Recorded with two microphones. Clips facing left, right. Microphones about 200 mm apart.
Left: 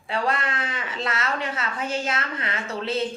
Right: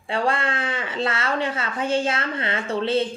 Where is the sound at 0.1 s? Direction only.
30° right (ahead or behind).